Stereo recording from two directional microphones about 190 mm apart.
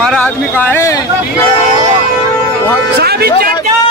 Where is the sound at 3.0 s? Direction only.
55° right (ahead or behind).